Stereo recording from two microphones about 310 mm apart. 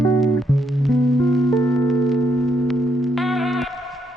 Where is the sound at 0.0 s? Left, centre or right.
Centre.